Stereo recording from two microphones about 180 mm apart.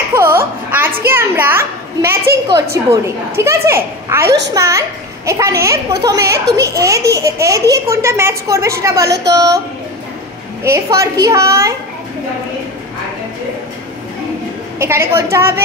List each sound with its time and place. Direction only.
0.1 s a sound: 15° right (ahead or behind)
2.7 s a child's voice: 15° right (ahead or behind)
10.6 s a child's voice: 15° right (ahead or behind)
14.8 s a child's voice: 15° right (ahead or behind)